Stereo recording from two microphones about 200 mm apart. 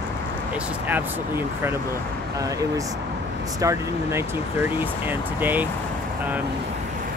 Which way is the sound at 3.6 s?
15° right (ahead or behind).